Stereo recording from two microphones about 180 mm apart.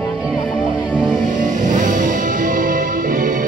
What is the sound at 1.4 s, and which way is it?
Music, 45° right (ahead or behind).